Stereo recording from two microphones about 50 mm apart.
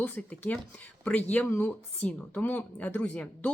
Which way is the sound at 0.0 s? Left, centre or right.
Left.